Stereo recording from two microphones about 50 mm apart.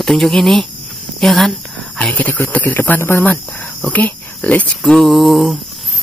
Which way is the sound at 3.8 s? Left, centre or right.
Left.